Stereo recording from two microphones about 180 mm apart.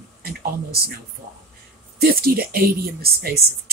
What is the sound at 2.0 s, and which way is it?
Speech, 55° right (ahead or behind).